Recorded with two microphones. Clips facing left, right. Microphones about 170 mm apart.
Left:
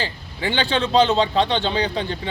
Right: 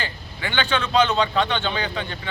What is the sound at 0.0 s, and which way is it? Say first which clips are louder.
A man's voice: left 5 dB; 30° left (ahead or behind).